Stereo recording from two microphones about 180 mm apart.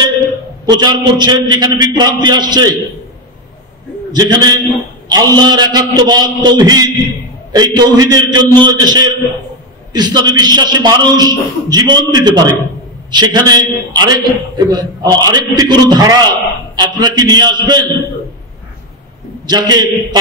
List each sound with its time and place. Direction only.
0.7 s a man's voice: 25° right (ahead or behind)
4.1 s a man's voice: 25° right (ahead or behind)
19.4 s a man's voice: 25° right (ahead or behind)